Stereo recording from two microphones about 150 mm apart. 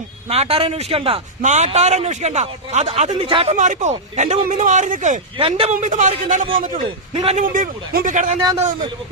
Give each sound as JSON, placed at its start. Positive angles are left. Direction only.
{"t": 0.3, "sound": "a man's voice", "side_deg": -40}
{"t": 3.6, "sound": "a man's voice", "side_deg": -55}
{"t": 4.4, "sound": "speech", "side_deg": -55}
{"t": 5.4, "sound": "a man's voice", "side_deg": -40}
{"t": 5.7, "sound": "speech", "side_deg": -55}
{"t": 6.8, "sound": "a man's voice", "side_deg": -35}
{"t": 7.3, "sound": "speech", "side_deg": -60}
{"t": 8.4, "sound": "a man's voice", "side_deg": -25}